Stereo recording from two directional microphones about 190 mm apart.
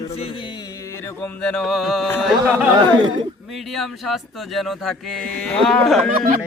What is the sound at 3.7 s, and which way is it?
Speech, centre (ahead or behind).